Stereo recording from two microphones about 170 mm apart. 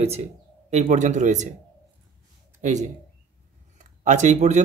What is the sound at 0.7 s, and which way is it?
Speech, 45° right (ahead or behind).